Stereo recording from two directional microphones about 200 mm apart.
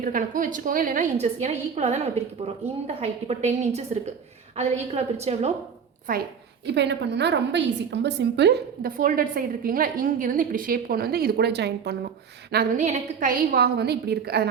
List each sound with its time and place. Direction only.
0.0 s a woman's voice: 45° right (ahead or behind)
6.1 s a woman's voice: 45° right (ahead or behind)
6.7 s a woman's voice: 60° right (ahead or behind)
12.5 s a woman's voice: 45° right (ahead or behind)